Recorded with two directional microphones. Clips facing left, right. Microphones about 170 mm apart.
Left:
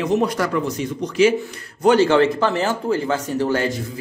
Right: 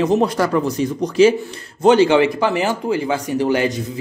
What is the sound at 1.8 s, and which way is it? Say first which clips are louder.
Speech: right 2 dB; 20° right (ahead or behind).